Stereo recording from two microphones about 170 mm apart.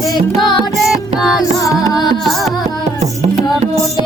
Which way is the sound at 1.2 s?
Centre (ahead or behind).